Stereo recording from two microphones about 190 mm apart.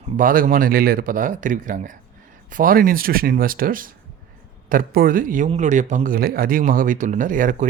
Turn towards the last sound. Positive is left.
turn(degrees=-45)  # may be behind; listen again after turning